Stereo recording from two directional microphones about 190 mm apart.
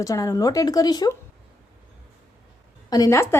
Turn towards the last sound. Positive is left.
turn(degrees=15)  # may be behind; listen again after turning